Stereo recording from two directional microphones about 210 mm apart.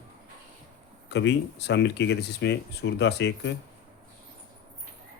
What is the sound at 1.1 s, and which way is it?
Speech, 55° left (ahead or behind).